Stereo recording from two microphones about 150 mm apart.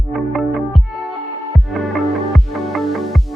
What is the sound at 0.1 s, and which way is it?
Music, centre (ahead or behind).